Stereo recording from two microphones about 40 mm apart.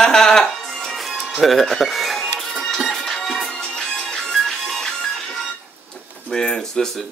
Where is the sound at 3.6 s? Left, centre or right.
Left.